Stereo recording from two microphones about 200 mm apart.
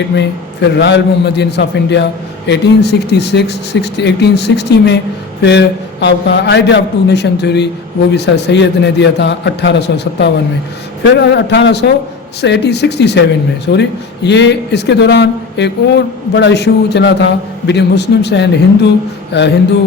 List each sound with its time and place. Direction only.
0.2 s speech: 60° left (ahead or behind)